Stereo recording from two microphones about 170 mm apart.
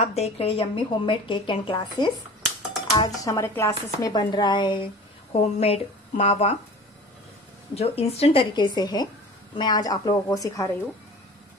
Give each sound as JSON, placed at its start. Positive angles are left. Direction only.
{"t": 0.0, "sound": "a woman's voice", "side_deg": 40}
{"t": 7.7, "sound": "a woman's voice", "side_deg": 35}